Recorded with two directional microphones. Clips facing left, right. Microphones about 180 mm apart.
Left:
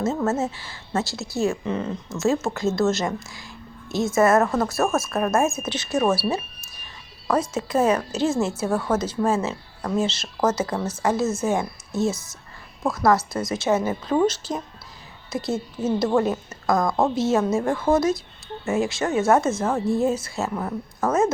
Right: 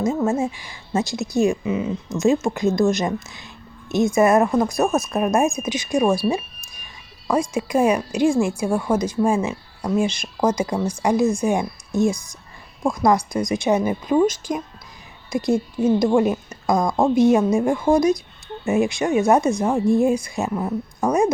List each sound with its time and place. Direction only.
0.0 s a woman's voice: 10° right (ahead or behind)